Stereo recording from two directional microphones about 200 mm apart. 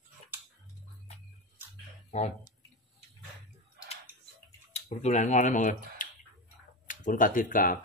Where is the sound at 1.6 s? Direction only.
10° right (ahead or behind).